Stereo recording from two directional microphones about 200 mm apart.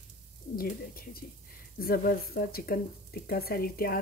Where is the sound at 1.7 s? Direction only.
50° left (ahead or behind).